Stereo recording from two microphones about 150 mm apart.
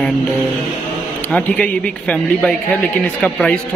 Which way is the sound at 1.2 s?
10° left (ahead or behind).